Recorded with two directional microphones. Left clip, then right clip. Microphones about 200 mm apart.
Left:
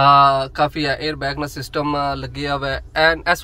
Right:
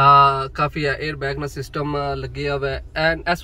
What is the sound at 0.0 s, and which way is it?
Speech, 65° left (ahead or behind).